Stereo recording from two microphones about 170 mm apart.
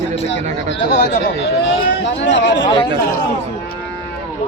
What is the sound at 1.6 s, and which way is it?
Speech, 90° left.